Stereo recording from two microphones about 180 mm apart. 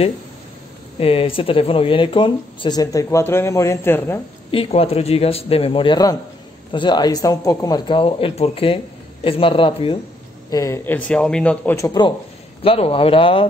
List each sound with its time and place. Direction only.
0.9 s speech: 30° left (ahead or behind); by 4.2 s 15° left (ahead or behind)
4.5 s a man's voice: 30° left (ahead or behind)
10.5 s a man's voice: 15° left (ahead or behind)
12.6 s a man's voice: 30° left (ahead or behind)